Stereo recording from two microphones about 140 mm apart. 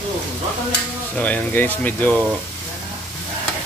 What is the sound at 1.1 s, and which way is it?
Speech, 10° left (ahead or behind).